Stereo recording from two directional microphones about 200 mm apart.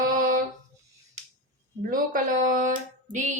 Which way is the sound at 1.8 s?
45° right (ahead or behind).